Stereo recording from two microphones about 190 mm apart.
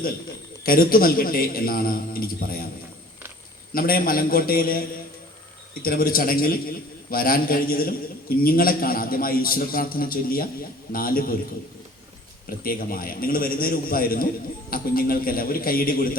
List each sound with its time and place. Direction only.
0.6 s a man's voice: 50° left (ahead or behind)
3.8 s a man's voice: 50° left (ahead or behind)
5.8 s a man's voice: 50° left (ahead or behind)
12.5 s a man's voice: 50° left (ahead or behind)